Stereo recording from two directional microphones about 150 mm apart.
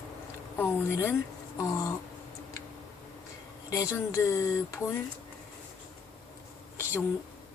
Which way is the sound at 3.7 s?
20° left (ahead or behind).